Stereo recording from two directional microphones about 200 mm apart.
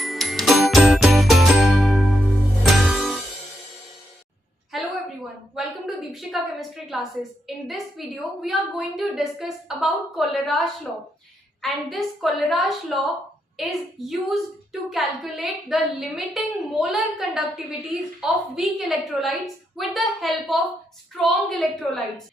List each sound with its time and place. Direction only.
0.0 s music: centre (ahead or behind)
4.7 s a sound: centre (ahead or behind)
7.4 s a woman's voice: centre (ahead or behind)